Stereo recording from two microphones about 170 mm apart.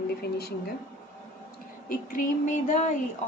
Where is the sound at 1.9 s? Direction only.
50° left (ahead or behind).